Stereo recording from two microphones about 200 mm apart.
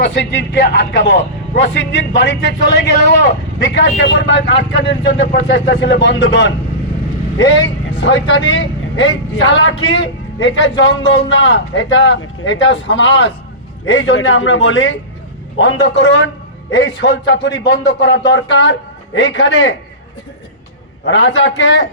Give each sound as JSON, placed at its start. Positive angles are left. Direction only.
{"t": 0.0, "sound": "a man's voice", "side_deg": 65}
{"t": 8.0, "sound": "a man's voice", "side_deg": 65}
{"t": 21.0, "sound": "a man's voice", "side_deg": 65}